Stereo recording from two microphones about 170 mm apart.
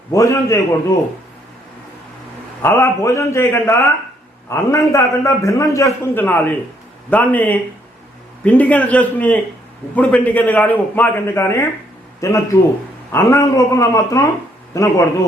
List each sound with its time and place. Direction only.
0.1 s a man's voice: 20° left (ahead or behind)
2.6 s a man's voice: 15° left (ahead or behind)